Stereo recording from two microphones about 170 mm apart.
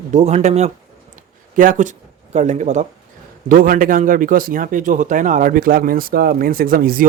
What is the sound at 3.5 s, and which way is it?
A man's voice, 55° right (ahead or behind).